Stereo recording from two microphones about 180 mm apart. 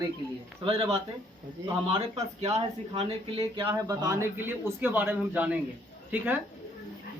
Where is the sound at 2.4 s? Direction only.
35° right (ahead or behind); by 5.5 s 10° right (ahead or behind).